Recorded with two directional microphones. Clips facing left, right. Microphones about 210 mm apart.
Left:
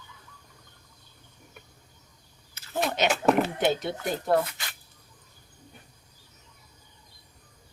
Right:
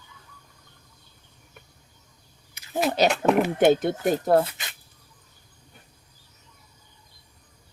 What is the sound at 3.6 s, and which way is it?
Speech, 50° right (ahead or behind).